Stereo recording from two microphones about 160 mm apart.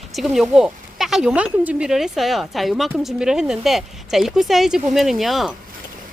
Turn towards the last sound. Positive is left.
turn(degrees=0)  # may be behind; listen again after turning